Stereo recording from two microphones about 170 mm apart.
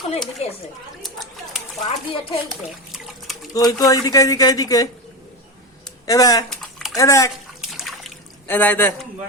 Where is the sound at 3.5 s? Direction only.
20° left (ahead or behind).